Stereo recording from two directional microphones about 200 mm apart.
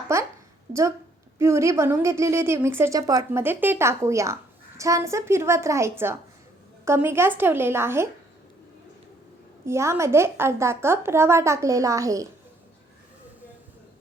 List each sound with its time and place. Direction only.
0.1 s a woman's voice: 15° right (ahead or behind)
9.6 s a woman's voice: 15° right (ahead or behind)